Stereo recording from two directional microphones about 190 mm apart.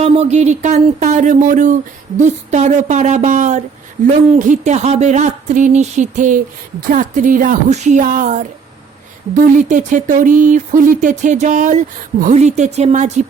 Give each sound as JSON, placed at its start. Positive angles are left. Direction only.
{"t": 0.0, "sound": "speech", "side_deg": -35}